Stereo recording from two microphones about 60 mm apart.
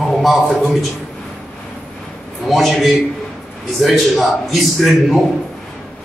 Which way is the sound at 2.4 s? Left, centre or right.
Centre.